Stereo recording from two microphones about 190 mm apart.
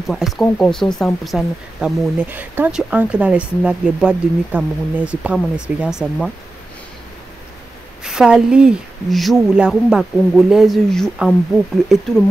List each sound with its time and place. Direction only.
0.0 s speech: centre (ahead or behind)
8.0 s speech: 5° right (ahead or behind)